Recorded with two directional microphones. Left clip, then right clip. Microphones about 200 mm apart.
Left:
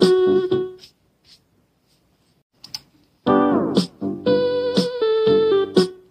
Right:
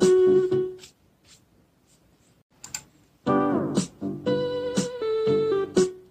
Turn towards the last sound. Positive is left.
turn(degrees=40)  # may be behind; listen again after turning